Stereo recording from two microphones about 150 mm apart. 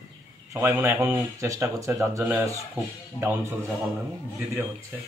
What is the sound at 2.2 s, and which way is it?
Speech, 10° right (ahead or behind).